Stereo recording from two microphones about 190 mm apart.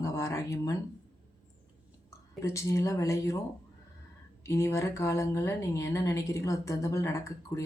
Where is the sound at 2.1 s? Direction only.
15° left (ahead or behind).